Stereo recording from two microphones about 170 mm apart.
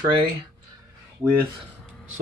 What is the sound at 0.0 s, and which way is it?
Speech, 30° right (ahead or behind).